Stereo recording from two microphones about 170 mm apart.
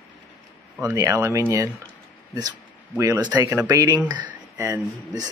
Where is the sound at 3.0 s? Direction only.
15° right (ahead or behind).